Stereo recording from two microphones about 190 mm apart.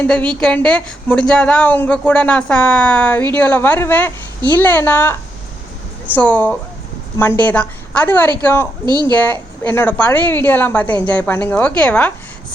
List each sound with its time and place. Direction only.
0.0 s a woman's voice: 5° left (ahead or behind)
8.9 s a woman's voice: 20° right (ahead or behind)
9.1 s a woman's voice: 10° left (ahead or behind)